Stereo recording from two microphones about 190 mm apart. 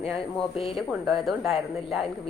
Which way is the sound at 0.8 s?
Centre (ahead or behind).